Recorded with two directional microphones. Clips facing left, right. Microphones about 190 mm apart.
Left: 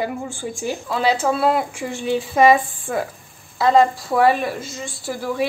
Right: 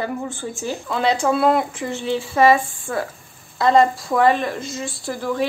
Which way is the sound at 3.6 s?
Centre (ahead or behind).